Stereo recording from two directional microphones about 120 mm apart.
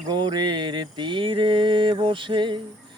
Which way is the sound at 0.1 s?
35° right (ahead or behind).